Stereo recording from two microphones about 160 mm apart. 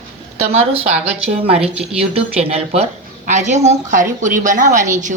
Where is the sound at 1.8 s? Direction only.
5° right (ahead or behind).